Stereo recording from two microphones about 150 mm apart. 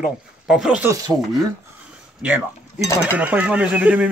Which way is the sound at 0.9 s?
25° right (ahead or behind).